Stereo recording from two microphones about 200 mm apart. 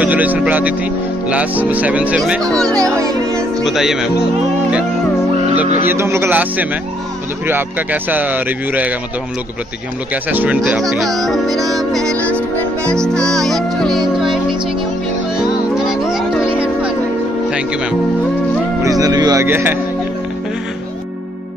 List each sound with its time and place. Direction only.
0.0 s speech: 10° right (ahead or behind)
3.0 s speech: 15° right (ahead or behind)
3.6 s speech: centre (ahead or behind)
5.9 s speech: 15° right (ahead or behind)
10.3 s speech: 10° right (ahead or behind)
12.2 s music: 5° left (ahead or behind)
15.8 s music: centre (ahead or behind)
17.5 s speech: 5° right (ahead or behind)
18.8 s speech: 20° right (ahead or behind)